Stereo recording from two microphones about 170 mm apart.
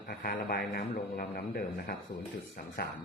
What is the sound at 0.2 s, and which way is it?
Speech, 65° left (ahead or behind).